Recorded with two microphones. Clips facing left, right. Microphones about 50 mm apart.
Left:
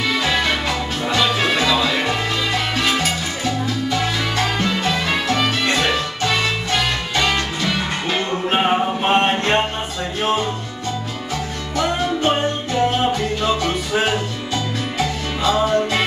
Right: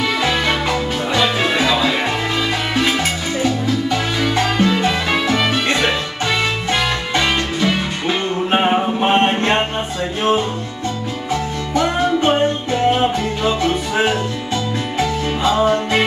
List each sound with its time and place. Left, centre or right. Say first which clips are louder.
1.5 s music: right 1 dB; centre
4.2 s music: right 4 dB; centre
9.2 s a sound: right 2 dB; right
11.7 s music: right 4 dB; right
15.0 s music: right 4 dB; right